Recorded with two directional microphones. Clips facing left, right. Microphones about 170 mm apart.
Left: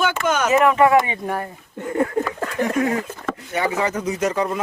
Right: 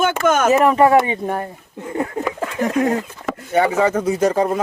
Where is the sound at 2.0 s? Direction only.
20° right (ahead or behind).